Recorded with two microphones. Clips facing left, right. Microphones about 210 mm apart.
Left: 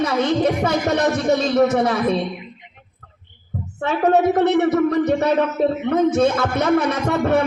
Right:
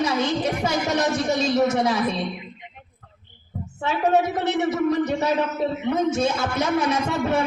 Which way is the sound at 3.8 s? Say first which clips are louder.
Left 4 dB; 55° left (ahead or behind).